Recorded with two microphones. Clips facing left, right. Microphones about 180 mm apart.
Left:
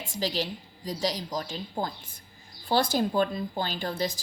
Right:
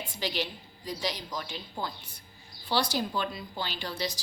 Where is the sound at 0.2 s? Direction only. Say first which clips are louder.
Left 4 dB; 40° left (ahead or behind).